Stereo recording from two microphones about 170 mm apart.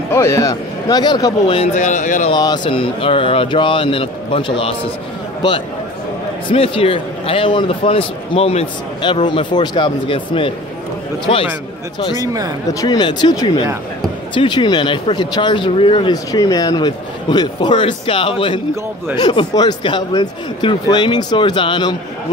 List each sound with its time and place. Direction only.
0.1 s speech: 15° left (ahead or behind); by 2.3 s 45° left (ahead or behind)
2.3 s a man's voice: 25° left (ahead or behind)
6.5 s a man's voice: 35° left (ahead or behind)
12.2 s speech: 20° right (ahead or behind)
12.8 s speech: 25° left (ahead or behind)